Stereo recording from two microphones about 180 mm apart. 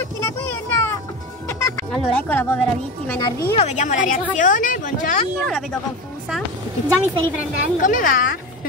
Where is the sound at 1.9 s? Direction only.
5° left (ahead or behind).